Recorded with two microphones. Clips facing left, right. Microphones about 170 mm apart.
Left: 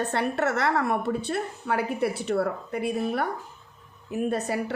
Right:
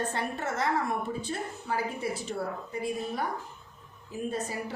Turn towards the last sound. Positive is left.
turn(degrees=70)  # may be behind; listen again after turning